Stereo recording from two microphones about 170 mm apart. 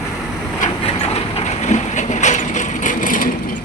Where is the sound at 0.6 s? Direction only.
40° left (ahead or behind).